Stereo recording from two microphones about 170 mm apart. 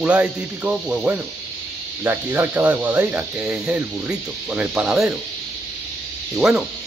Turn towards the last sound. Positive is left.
turn(degrees=-5)  # may be behind; listen again after turning